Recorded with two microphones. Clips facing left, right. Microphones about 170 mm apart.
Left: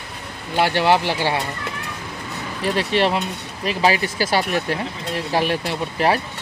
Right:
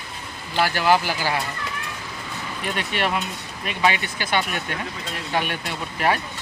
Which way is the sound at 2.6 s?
30° left (ahead or behind).